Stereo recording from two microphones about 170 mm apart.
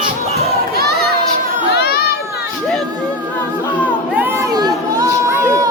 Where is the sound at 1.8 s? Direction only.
65° left (ahead or behind).